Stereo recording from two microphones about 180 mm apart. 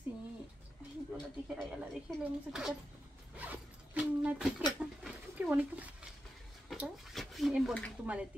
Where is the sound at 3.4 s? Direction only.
10° right (ahead or behind).